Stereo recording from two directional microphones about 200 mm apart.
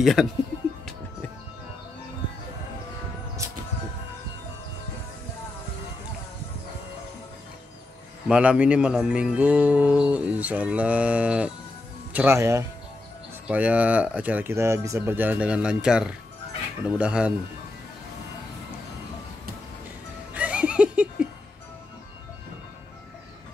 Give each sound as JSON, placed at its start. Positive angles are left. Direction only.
{"t": 0.0, "sound": "speech", "side_deg": 0}
{"t": 8.3, "sound": "speech", "side_deg": -5}
{"t": 20.3, "sound": "laughter", "side_deg": -5}